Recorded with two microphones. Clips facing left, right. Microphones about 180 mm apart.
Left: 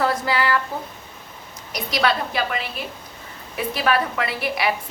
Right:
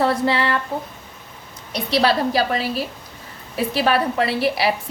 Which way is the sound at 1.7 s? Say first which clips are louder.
Right 4 dB; 30° right (ahead or behind).